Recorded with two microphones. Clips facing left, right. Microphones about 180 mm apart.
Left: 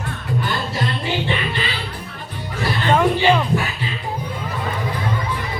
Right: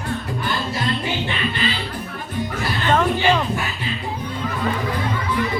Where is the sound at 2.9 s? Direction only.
10° left (ahead or behind).